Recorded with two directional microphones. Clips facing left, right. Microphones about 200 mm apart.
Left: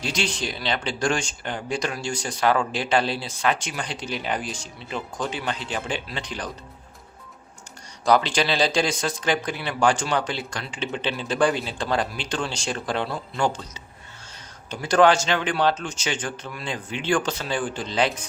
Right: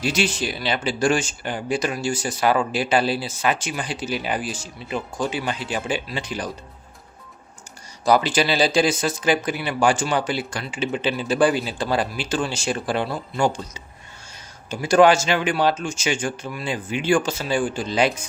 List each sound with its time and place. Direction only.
0.0 s speech: 5° right (ahead or behind)
8.0 s speech: 5° right (ahead or behind)
14.7 s speech: 10° right (ahead or behind)